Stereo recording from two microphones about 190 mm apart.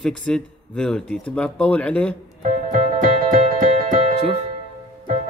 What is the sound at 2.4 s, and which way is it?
Music, 45° right (ahead or behind).